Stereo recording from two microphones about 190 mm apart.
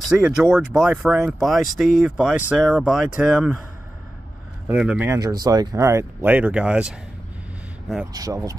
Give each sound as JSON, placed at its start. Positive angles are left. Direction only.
{"t": 0.0, "sound": "speech", "side_deg": -5}
{"t": 4.6, "sound": "speech", "side_deg": -5}
{"t": 8.1, "sound": "speech", "side_deg": -20}